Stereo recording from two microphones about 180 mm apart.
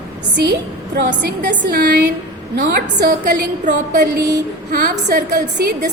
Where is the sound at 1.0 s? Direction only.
65° right (ahead or behind).